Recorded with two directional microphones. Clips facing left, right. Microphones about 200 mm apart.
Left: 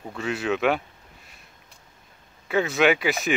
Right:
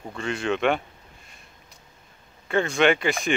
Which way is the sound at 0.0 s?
Centre (ahead or behind).